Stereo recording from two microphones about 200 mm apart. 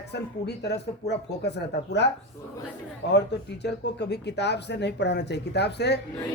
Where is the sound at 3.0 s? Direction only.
55° left (ahead or behind).